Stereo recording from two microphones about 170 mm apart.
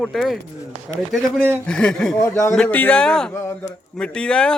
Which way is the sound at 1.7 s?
5° left (ahead or behind).